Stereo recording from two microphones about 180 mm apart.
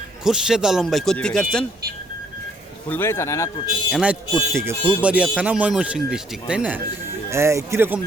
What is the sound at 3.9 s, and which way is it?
Speech, 5° right (ahead or behind).